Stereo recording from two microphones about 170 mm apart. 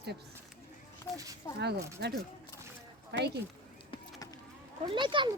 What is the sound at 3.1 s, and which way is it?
Speech, 75° right (ahead or behind).